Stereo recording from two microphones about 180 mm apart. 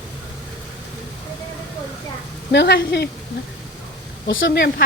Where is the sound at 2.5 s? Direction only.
70° left (ahead or behind).